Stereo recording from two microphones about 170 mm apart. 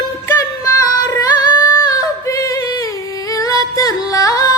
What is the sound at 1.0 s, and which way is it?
Singing, 20° left (ahead or behind).